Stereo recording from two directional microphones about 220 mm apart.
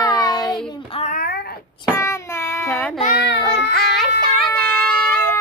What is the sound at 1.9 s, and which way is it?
Child singing, 15° left (ahead or behind).